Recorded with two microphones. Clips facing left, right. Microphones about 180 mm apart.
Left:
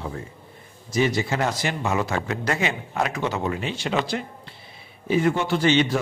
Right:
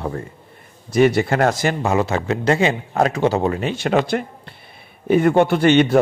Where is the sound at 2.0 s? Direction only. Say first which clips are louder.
Right 6 dB; 25° right (ahead or behind).